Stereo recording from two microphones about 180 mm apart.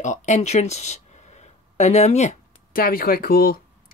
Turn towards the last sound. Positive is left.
turn(degrees=55)  # may be behind; listen again after turning